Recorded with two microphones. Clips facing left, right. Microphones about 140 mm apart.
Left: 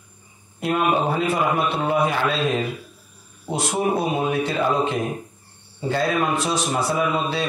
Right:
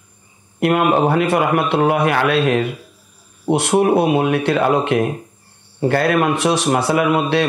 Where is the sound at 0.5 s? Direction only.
70° right (ahead or behind).